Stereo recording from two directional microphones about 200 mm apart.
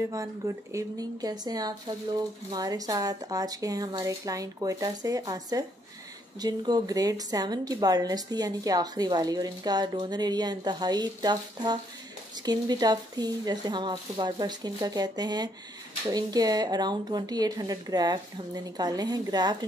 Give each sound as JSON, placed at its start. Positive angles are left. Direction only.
{"t": 0.1, "sound": "a woman's voice", "side_deg": -15}